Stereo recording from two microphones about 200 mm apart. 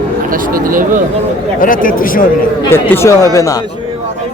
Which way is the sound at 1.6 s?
45° left (ahead or behind).